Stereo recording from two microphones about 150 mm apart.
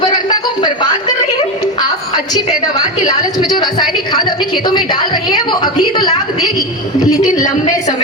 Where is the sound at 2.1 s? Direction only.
25° left (ahead or behind).